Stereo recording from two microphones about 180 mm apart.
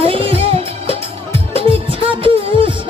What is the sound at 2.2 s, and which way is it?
Beatboxing, 30° right (ahead or behind).